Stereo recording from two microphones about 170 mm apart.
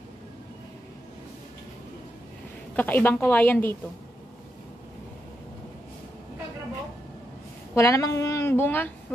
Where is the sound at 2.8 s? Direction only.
10° left (ahead or behind).